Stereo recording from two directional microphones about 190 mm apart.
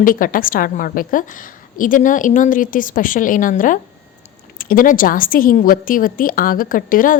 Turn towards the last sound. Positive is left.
turn(degrees=45)  # may be behind; listen again after turning